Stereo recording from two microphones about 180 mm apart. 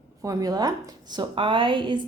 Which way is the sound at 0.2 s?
20° right (ahead or behind).